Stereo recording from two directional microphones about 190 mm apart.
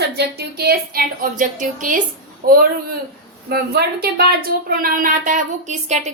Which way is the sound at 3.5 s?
55° right (ahead or behind).